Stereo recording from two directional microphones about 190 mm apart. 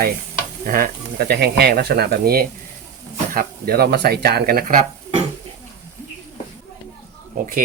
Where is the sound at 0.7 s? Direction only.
55° right (ahead or behind).